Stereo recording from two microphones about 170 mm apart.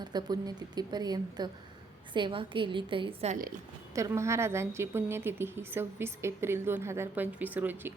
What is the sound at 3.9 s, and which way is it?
A woman's voice, 15° right (ahead or behind).